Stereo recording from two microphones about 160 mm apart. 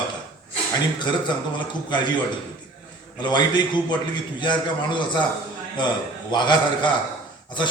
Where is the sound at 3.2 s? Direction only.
25° left (ahead or behind).